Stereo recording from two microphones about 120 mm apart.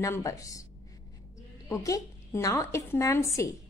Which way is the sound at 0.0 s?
25° left (ahead or behind).